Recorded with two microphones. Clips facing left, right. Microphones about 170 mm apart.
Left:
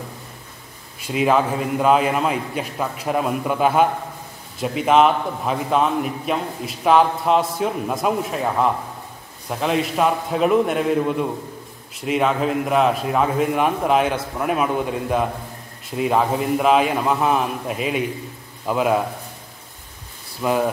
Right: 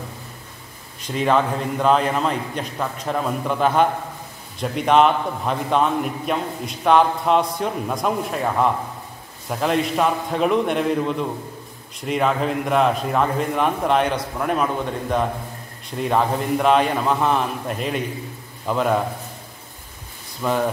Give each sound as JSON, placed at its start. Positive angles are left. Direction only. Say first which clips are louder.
{"t": 1.0, "sound": "a man's voice", "louder": "left 1 dB", "side_deg": 5}
{"t": 20.4, "sound": "a man's voice", "louder": "left 1 dB", "side_deg": 5}